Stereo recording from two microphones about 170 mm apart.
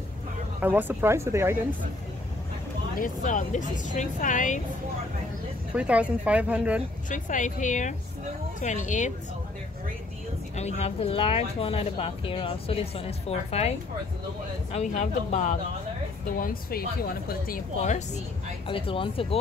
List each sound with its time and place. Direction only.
0.6 s speech: 10° right (ahead or behind)
3.0 s speech: 50° left (ahead or behind)
5.8 s speech: 5° right (ahead or behind)
7.1 s speech: 50° left (ahead or behind)
10.5 s speech: 40° left (ahead or behind); by 17.6 s 60° left (ahead or behind)
17.7 s speech: 45° left (ahead or behind)
18.7 s speech: 30° left (ahead or behind)